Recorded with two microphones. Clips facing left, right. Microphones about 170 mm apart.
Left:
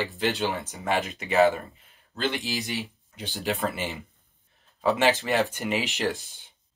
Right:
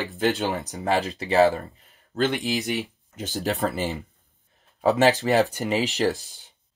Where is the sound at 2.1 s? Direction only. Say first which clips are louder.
Right 5 dB; 50° right (ahead or behind).